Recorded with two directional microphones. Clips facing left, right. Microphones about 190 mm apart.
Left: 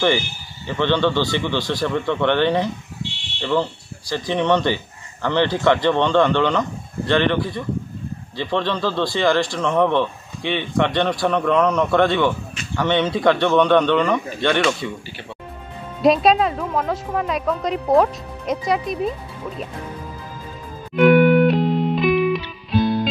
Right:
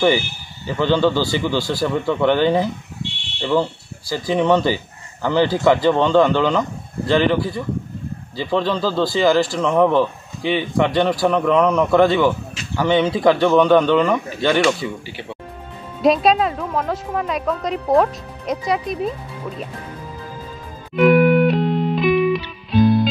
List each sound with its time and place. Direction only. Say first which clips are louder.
0.7 s speech: right 2 dB; 5° right (ahead or behind)
20.9 s music: even; centre (ahead or behind)